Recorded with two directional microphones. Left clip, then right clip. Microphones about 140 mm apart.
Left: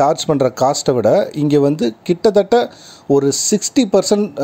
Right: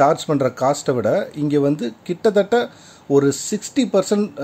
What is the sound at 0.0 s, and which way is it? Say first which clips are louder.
Speech: left 2 dB; 40° left (ahead or behind).